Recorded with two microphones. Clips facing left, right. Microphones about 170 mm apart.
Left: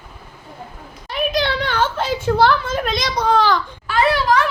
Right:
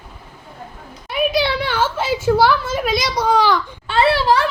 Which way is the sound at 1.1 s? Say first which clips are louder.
Right 2 dB; 5° right (ahead or behind).